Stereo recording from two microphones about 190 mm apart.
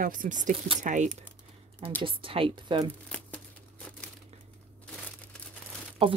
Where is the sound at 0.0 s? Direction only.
45° right (ahead or behind).